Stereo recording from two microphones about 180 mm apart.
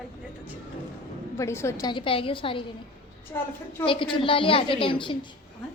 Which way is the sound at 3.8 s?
30° left (ahead or behind).